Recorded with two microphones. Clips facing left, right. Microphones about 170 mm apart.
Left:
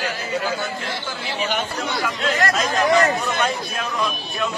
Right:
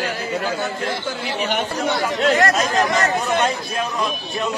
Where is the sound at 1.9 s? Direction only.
40° right (ahead or behind).